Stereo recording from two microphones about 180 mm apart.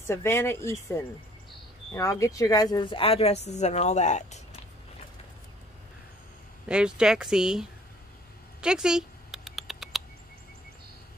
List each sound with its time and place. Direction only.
0.0 s speech: 15° left (ahead or behind); by 4.6 s 40° left (ahead or behind)
6.7 s speech: 5° right (ahead or behind)
8.5 s rodents: 5° right (ahead or behind)